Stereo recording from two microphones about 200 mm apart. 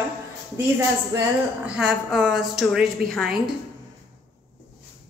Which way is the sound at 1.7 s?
5° right (ahead or behind).